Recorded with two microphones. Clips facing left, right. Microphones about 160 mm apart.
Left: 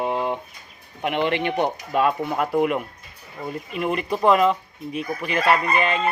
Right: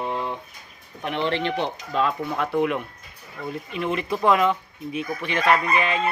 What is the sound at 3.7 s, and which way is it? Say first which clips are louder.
Speech: left 2 dB; centre (ahead or behind).